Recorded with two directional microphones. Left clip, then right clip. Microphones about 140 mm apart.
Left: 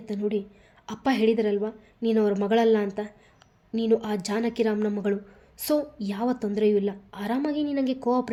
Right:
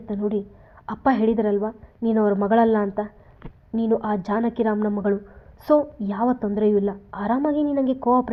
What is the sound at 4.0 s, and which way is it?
Speech, 35° left (ahead or behind).